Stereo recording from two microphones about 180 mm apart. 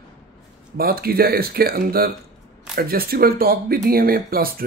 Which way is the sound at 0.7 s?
55° right (ahead or behind).